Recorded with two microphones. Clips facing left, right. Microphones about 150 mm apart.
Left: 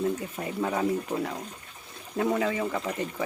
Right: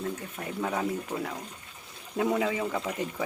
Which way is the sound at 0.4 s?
5° left (ahead or behind).